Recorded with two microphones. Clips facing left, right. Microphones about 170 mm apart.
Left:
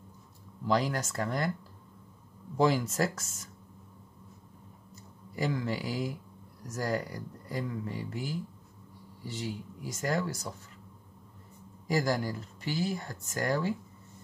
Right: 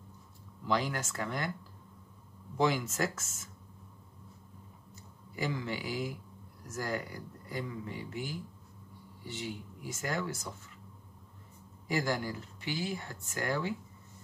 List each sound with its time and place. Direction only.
0.7 s speech: 40° left (ahead or behind)
2.5 s speech: 35° left (ahead or behind)
4.9 s speech: 35° left (ahead or behind)
11.9 s speech: 40° left (ahead or behind)